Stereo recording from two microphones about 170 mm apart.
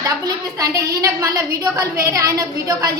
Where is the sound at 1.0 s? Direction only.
20° right (ahead or behind).